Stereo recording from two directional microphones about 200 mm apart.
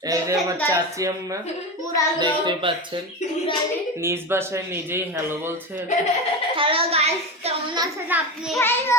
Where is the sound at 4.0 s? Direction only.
10° right (ahead or behind).